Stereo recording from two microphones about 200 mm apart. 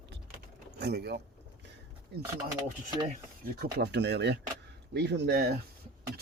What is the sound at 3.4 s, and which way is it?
Speech, 50° right (ahead or behind).